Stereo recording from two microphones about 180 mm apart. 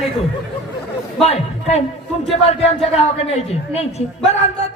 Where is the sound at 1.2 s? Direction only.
35° left (ahead or behind).